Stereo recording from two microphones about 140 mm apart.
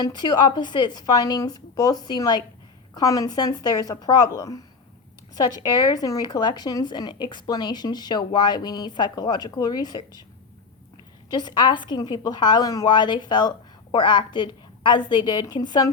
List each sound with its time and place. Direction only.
0.0 s a woman's voice: 30° left (ahead or behind)
11.3 s a woman's voice: 30° left (ahead or behind)